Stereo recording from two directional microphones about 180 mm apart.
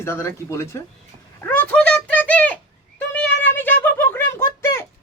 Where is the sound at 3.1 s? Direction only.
10° left (ahead or behind).